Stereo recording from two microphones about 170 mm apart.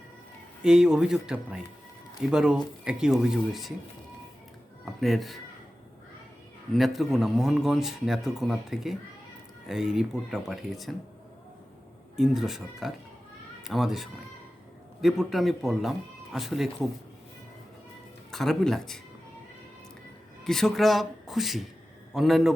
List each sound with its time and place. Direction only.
0.6 s speech: 5° right (ahead or behind)
4.9 s speech: centre (ahead or behind)
6.7 s speech: centre (ahead or behind)
12.1 s speech: centre (ahead or behind)
18.3 s speech: centre (ahead or behind)
20.4 s speech: centre (ahead or behind)